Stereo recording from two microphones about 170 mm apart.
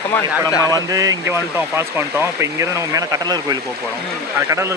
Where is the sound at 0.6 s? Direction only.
20° right (ahead or behind).